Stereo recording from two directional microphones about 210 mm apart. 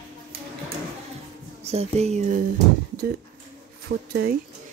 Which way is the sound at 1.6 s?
30° right (ahead or behind).